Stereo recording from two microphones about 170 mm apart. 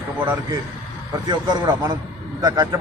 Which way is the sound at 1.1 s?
25° right (ahead or behind).